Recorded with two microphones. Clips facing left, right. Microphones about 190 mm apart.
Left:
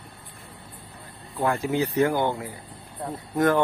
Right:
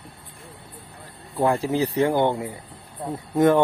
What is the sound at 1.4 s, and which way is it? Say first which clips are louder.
Speech: right 3 dB; 30° right (ahead or behind).